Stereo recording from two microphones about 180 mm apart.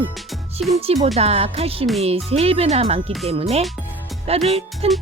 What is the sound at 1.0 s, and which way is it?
Speech, 35° right (ahead or behind).